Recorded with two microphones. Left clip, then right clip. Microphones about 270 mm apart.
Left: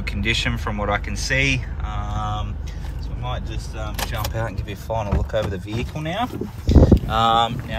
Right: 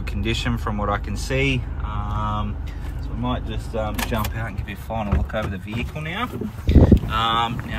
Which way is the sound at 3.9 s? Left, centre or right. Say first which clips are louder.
Right 1 dB; centre.